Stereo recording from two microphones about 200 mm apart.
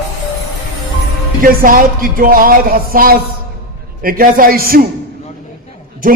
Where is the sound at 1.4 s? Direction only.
45° right (ahead or behind).